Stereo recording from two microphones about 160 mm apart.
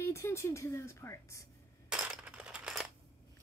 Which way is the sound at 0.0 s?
15° left (ahead or behind).